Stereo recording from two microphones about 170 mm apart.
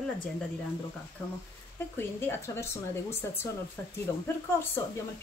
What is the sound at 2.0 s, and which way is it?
Speech, 15° left (ahead or behind).